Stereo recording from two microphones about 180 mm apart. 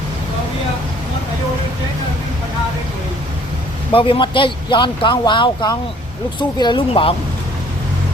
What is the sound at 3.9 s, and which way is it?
Speech, 30° left (ahead or behind).